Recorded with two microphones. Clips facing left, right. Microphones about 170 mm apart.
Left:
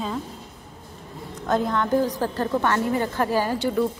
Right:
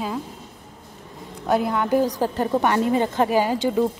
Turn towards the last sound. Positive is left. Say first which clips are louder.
# right 2 dB
turn(degrees=-15)  # may be behind; listen again after turning